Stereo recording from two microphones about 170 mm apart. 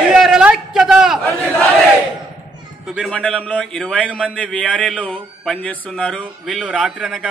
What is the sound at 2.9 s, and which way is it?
Speech, centre (ahead or behind).